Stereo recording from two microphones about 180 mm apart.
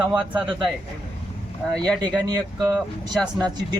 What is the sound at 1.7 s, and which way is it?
Speech, 5° left (ahead or behind).